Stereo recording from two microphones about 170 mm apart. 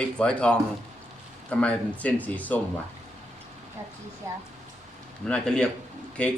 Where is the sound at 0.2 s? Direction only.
5° left (ahead or behind).